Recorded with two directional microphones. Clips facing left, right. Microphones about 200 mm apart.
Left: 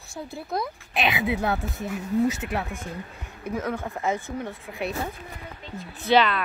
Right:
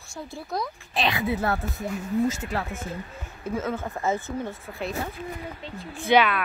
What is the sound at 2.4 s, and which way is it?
Speech, 15° left (ahead or behind).